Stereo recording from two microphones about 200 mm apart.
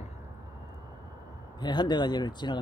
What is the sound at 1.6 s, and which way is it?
Speech, 20° left (ahead or behind).